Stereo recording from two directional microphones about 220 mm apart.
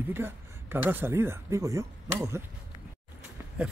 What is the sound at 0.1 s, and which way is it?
Speech, 10° right (ahead or behind).